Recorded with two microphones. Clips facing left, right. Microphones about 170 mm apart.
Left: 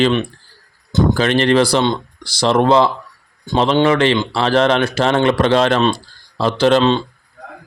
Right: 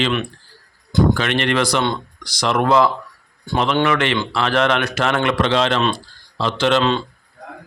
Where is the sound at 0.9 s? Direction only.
30° left (ahead or behind).